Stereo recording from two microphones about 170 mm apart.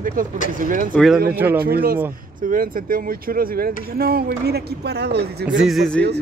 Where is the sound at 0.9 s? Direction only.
Centre (ahead or behind).